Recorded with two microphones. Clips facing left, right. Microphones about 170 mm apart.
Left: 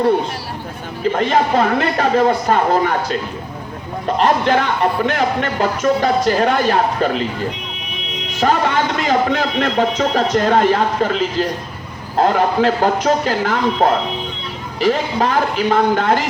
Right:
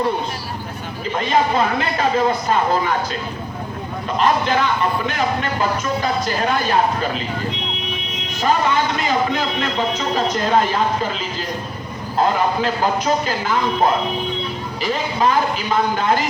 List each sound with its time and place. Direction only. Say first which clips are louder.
1.2 s speech: left 2 dB; 65° left (ahead or behind)
4.2 s a man's voice: left 2 dB; 65° left (ahead or behind)
8.4 s a man's voice: left 2 dB; 70° left (ahead or behind)
14.8 s a man's voice: left 5 dB; 70° left (ahead or behind)